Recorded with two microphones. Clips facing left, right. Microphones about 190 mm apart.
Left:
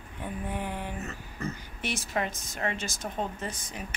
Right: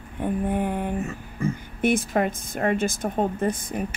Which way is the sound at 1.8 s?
55° right (ahead or behind).